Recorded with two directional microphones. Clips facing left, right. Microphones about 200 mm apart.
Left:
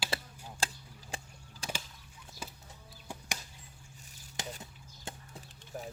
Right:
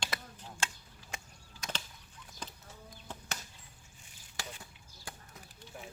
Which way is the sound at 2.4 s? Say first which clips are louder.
Left 1 dB; 10° left (ahead or behind).